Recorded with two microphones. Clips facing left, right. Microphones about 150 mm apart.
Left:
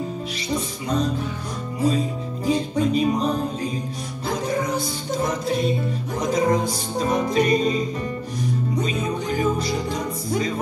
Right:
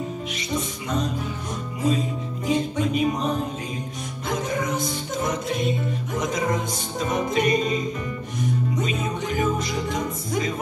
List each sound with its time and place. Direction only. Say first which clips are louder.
2.4 s music: left 2 dB; 35° left (ahead or behind)
4.3 s music: left 2 dB; 35° left (ahead or behind)